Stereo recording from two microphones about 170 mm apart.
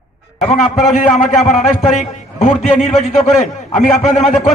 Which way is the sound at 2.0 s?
45° left (ahead or behind).